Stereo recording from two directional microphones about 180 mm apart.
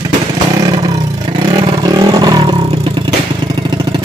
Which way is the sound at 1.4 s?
25° right (ahead or behind).